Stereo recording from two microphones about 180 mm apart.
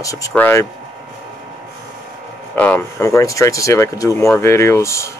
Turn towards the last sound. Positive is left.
turn(degrees=15)  # may be behind; listen again after turning